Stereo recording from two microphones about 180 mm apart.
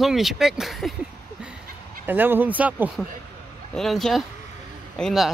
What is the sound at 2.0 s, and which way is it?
Speech, 10° right (ahead or behind).